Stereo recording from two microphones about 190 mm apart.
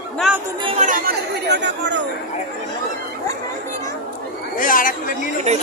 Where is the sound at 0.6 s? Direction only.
30° right (ahead or behind).